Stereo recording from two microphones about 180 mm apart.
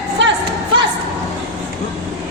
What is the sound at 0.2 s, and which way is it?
Music, 90° right.